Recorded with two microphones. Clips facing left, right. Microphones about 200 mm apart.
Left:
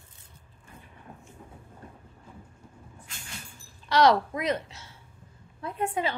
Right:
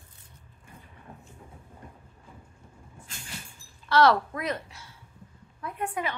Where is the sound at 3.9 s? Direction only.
15° left (ahead or behind).